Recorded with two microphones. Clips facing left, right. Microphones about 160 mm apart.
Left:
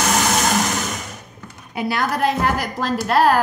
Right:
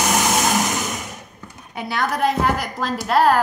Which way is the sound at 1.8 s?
5° left (ahead or behind).